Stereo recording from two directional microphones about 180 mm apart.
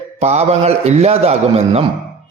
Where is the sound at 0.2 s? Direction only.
40° right (ahead or behind).